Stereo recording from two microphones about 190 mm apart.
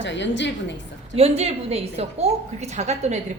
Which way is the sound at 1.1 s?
30° right (ahead or behind).